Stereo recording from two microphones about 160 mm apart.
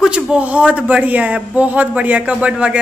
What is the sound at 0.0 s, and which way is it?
A man's voice, 5° right (ahead or behind).